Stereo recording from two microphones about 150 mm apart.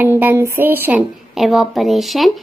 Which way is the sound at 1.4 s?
Centre (ahead or behind).